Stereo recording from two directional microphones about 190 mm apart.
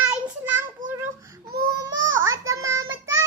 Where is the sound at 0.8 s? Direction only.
45° right (ahead or behind).